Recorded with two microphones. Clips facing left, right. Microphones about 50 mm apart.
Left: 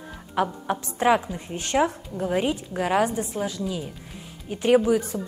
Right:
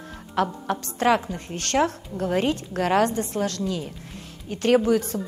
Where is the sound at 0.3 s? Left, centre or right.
Centre.